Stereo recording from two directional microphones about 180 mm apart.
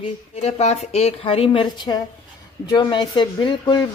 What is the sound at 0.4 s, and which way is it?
A woman's voice, 35° left (ahead or behind).